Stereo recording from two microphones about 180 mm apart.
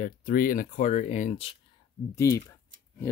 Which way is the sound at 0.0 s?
50° left (ahead or behind).